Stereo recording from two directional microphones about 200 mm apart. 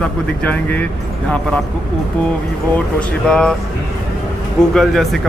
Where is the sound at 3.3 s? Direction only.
5° left (ahead or behind).